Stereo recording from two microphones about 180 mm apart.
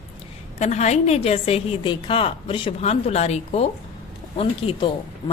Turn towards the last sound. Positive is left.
turn(degrees=30)  # may be behind; listen again after turning